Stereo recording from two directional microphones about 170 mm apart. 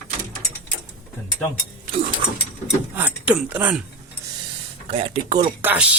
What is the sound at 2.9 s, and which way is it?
Speech, 10° right (ahead or behind).